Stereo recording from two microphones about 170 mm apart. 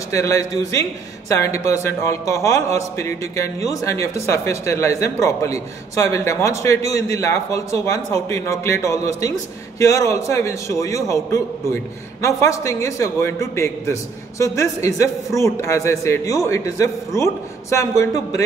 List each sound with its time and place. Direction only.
0.1 s a man's voice: 20° left (ahead or behind)